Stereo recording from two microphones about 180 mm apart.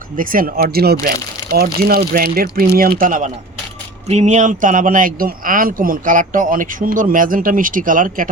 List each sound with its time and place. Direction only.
0.2 s a man's voice: 50° right (ahead or behind)